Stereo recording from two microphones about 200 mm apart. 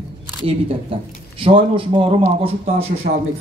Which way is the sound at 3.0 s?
50° right (ahead or behind).